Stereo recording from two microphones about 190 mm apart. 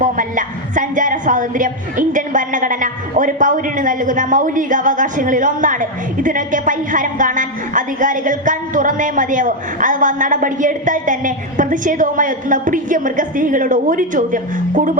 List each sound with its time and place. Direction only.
0.0 s a woman's voice: 45° right (ahead or behind)